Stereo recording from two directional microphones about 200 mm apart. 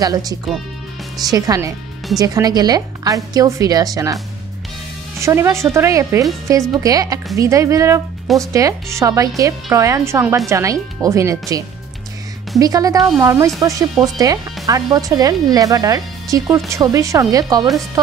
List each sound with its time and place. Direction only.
0.0 s speech: 20° right (ahead or behind)
5.2 s speech: 15° right (ahead or behind)